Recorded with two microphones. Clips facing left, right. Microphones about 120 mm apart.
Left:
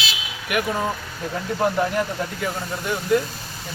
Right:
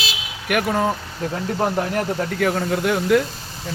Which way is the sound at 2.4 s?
70° right (ahead or behind).